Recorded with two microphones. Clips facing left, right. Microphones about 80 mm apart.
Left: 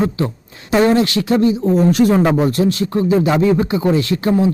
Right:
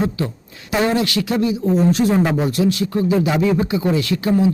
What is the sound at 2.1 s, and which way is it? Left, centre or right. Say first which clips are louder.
Speech: left 3 dB; left.